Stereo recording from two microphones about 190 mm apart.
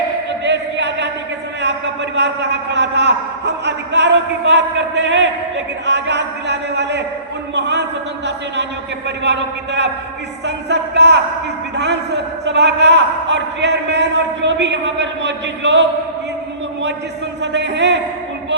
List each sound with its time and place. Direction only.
0.4 s a sound: 65° right (ahead or behind)
2.1 s a man's voice: 65° right (ahead or behind)
9.0 s a man's voice: 65° right (ahead or behind)
17.4 s a man's voice: 65° right (ahead or behind)